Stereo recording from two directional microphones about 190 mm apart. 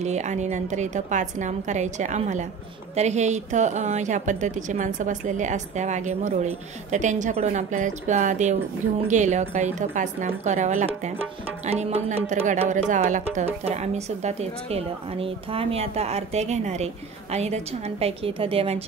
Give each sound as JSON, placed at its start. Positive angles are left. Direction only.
{"t": 0.0, "sound": "a woman's voice", "side_deg": -35}